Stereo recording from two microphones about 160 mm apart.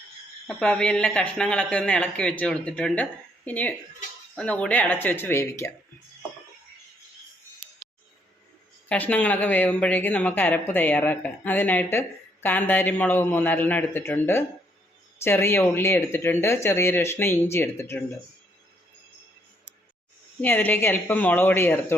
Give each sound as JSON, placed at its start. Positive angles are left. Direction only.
{"t": 0.4, "sound": "speech", "side_deg": 5}
{"t": 8.9, "sound": "speech", "side_deg": 10}
{"t": 20.4, "sound": "speech", "side_deg": 10}